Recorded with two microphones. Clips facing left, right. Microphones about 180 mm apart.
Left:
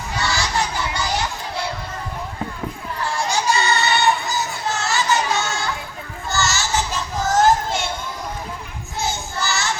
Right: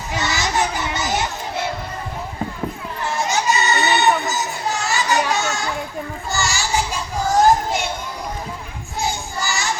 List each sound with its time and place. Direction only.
0.2 s children playing: 20° right (ahead or behind)
3.2 s child singing: 20° right (ahead or behind)
6.3 s music: 15° right (ahead or behind)
7.4 s children playing: 15° right (ahead or behind)
9.0 s child singing: 15° right (ahead or behind)